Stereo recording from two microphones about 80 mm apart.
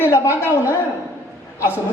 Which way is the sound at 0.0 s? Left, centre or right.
Left.